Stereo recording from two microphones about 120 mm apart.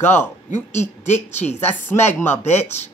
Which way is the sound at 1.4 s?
15° left (ahead or behind).